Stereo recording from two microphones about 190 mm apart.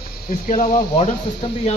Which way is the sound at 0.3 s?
50° left (ahead or behind).